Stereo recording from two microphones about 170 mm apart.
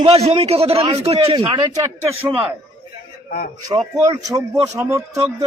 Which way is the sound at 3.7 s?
20° right (ahead or behind).